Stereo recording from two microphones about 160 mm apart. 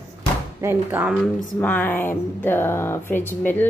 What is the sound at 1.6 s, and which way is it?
Speech, 10° left (ahead or behind).